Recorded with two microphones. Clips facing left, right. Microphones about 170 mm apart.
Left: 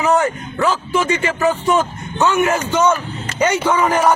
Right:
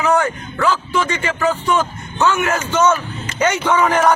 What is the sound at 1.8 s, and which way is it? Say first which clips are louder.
A man's voice: even; 15° left (ahead or behind).